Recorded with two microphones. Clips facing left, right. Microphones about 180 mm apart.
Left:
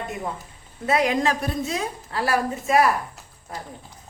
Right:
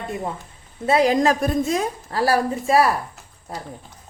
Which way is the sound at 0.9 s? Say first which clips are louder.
Right 4 dB; 30° right (ahead or behind).